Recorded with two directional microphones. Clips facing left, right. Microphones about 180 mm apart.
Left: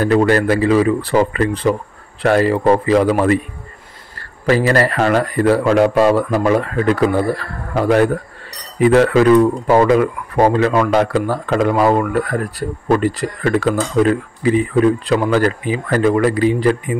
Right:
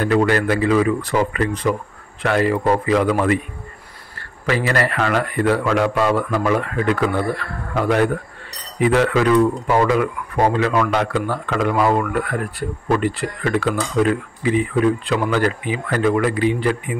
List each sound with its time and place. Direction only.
0.0 s speech: 40° left (ahead or behind)
4.5 s speech: 35° left (ahead or behind)